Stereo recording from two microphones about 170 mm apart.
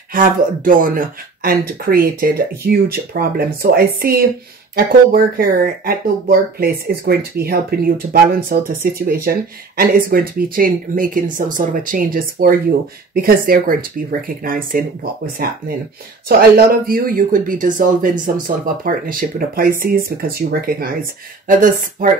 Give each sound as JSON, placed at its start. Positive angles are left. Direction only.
{"t": 0.1, "sound": "speech", "side_deg": -55}